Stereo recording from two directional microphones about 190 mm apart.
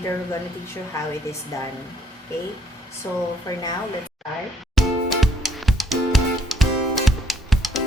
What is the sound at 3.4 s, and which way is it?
Speech, 20° left (ahead or behind).